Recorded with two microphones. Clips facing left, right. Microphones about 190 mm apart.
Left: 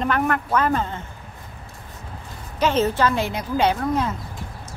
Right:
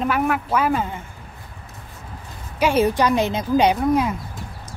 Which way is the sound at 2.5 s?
10° right (ahead or behind).